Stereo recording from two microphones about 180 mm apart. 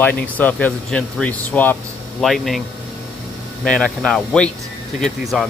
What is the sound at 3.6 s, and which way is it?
Speech, 5° left (ahead or behind).